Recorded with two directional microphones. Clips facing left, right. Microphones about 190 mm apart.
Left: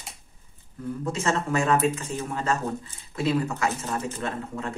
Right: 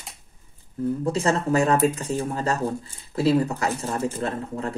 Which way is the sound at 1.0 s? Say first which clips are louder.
Right 2 dB; 35° right (ahead or behind).